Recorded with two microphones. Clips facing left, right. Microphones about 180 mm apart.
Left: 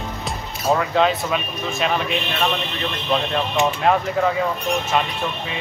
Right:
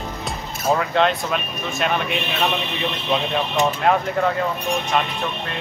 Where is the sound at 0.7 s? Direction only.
Centre (ahead or behind).